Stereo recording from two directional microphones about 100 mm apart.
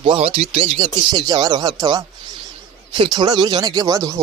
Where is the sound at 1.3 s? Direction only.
45° right (ahead or behind).